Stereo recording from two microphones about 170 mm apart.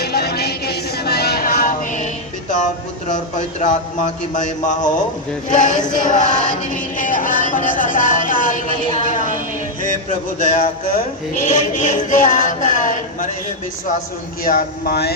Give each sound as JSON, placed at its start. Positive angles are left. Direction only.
{"t": 0.0, "sound": "music", "side_deg": 70}
{"t": 3.1, "sound": "a man's voice", "side_deg": 50}
{"t": 5.5, "sound": "music", "side_deg": 50}
{"t": 9.8, "sound": "a man's voice", "side_deg": 50}
{"t": 14.4, "sound": "speech", "side_deg": 60}